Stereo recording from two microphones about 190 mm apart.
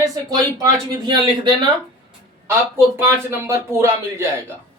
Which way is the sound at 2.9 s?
10° right (ahead or behind).